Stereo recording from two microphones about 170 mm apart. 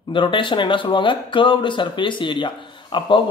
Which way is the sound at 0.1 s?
30° left (ahead or behind).